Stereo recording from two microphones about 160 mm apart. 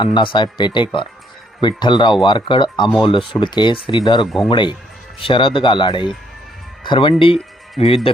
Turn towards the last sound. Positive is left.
turn(degrees=40)  # may be behind; listen again after turning